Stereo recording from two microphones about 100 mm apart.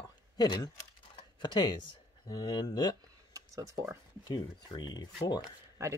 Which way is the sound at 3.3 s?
35° right (ahead or behind).